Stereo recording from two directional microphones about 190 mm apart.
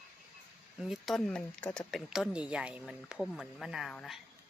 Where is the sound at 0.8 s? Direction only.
Centre (ahead or behind).